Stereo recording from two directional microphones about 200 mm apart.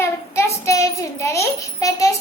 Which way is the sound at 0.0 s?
15° left (ahead or behind).